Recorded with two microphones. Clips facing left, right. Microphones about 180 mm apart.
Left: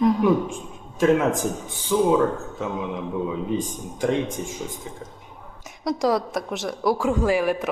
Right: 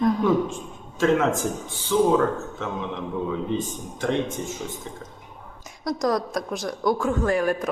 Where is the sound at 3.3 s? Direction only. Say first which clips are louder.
Even; 15° left (ahead or behind).